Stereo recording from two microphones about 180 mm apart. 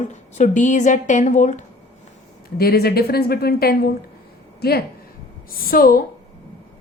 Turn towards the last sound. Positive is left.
turn(degrees=55)  # may be behind; listen again after turning